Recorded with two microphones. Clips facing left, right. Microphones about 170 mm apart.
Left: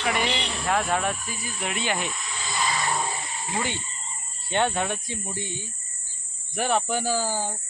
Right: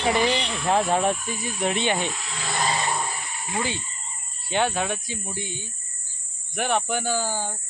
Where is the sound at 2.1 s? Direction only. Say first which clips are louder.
Right 3 dB; 75° right (ahead or behind).